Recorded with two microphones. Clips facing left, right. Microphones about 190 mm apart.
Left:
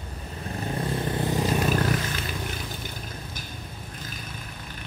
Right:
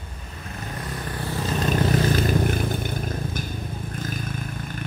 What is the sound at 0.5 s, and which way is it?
Vehicle, 30° left (ahead or behind).